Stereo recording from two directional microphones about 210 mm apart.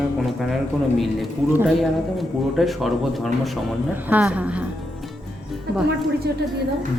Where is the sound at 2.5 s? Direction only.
Centre (ahead or behind).